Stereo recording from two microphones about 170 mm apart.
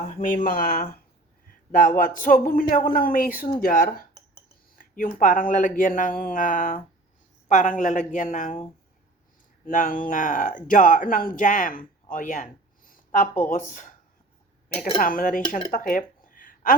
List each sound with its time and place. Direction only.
0.1 s speech: 50° left (ahead or behind)
9.6 s speech: 50° left (ahead or behind)